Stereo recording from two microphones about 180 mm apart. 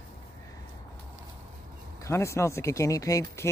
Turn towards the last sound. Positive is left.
turn(degrees=20)  # may be behind; listen again after turning